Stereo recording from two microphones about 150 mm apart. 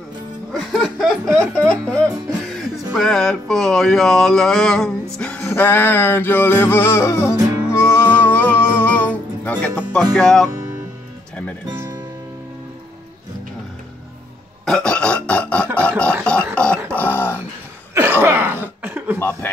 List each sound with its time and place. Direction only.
0.5 s a sound: centre (ahead or behind)
1.6 s music: 10° left (ahead or behind)
10.1 s speech: 5° left (ahead or behind)
11.7 s music: 20° right (ahead or behind)
14.6 s music: 5° left (ahead or behind)
16.5 s dog: 5° left (ahead or behind)
16.9 s a sound: 15° left (ahead or behind)
18.2 s cough: 15° right (ahead or behind)
19.1 s chuckle: 15° left (ahead or behind)